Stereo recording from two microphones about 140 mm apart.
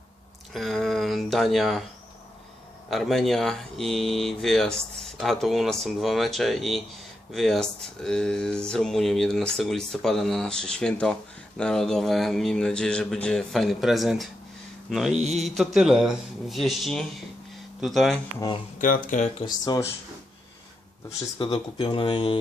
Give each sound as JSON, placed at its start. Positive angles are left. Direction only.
{"t": 0.5, "sound": "speech", "side_deg": 0}
{"t": 2.9, "sound": "speech", "side_deg": 0}
{"t": 15.1, "sound": "mantra", "side_deg": -55}
{"t": 15.4, "sound": "speech", "side_deg": 0}
{"t": 18.8, "sound": "speech", "side_deg": 70}
{"t": 19.6, "sound": "speech", "side_deg": 25}
{"t": 21.3, "sound": "speech", "side_deg": 35}